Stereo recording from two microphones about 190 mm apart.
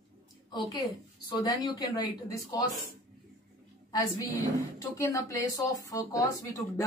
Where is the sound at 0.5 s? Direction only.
20° left (ahead or behind).